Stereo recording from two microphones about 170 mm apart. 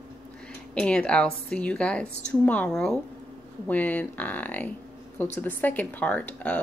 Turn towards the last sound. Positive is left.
turn(degrees=10)  # may be behind; listen again after turning